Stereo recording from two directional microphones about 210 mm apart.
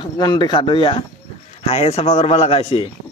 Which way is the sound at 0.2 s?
20° left (ahead or behind).